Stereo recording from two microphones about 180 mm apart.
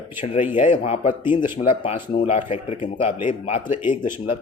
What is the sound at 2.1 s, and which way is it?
Speech, 30° left (ahead or behind).